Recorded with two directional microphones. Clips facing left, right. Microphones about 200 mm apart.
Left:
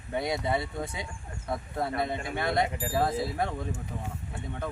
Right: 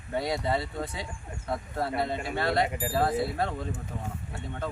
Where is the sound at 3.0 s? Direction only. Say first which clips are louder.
Right 1 dB; centre (ahead or behind).